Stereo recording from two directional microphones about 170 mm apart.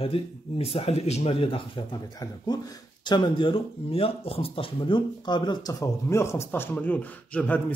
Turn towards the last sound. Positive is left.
turn(degrees=10)  # may be behind; listen again after turning